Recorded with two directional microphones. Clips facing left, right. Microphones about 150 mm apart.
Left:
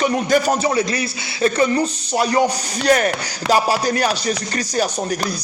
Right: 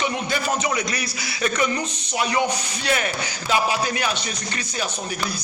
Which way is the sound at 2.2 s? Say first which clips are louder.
Left 5 dB; 40° left (ahead or behind).